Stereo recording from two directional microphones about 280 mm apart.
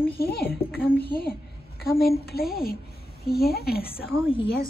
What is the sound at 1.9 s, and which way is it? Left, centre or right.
A woman's voice, left.